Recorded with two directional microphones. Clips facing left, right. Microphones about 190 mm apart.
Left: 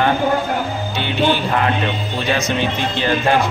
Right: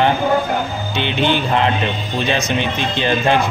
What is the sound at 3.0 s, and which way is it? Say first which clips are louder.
Speech: right 1 dB; 20° right (ahead or behind).